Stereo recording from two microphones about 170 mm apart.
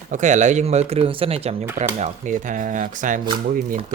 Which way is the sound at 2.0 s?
45° right (ahead or behind).